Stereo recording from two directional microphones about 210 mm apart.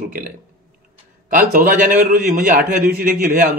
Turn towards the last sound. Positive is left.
turn(degrees=-40)  # may be behind; listen again after turning